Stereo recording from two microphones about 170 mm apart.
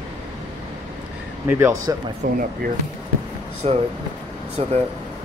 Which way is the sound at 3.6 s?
35° right (ahead or behind).